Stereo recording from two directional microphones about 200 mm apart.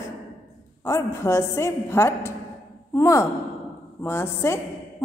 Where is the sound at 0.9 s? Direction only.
15° left (ahead or behind).